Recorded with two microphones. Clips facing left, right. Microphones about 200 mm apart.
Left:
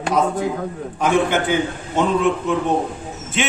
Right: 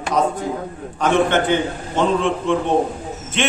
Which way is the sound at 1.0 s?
10° left (ahead or behind).